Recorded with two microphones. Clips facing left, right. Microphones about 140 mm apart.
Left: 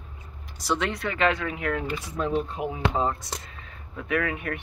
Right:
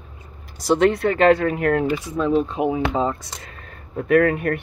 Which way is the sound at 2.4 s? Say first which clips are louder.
Right 7 dB; 90° right.